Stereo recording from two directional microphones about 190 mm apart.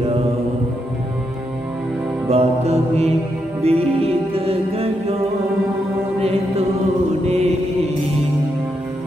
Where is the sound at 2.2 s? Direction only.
35° right (ahead or behind).